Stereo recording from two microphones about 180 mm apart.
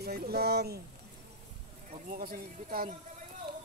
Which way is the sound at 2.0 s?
50° right (ahead or behind).